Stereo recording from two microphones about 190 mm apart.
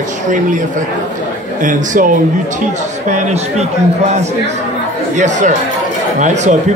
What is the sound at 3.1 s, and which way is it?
Speech, 35° right (ahead or behind).